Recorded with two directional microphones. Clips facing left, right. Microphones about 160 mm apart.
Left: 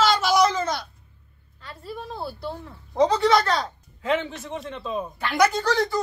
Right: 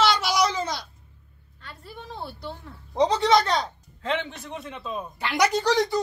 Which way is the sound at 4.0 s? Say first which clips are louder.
Left 4 dB; 5° left (ahead or behind).